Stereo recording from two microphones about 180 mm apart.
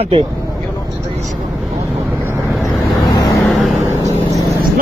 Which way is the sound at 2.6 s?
20° left (ahead or behind).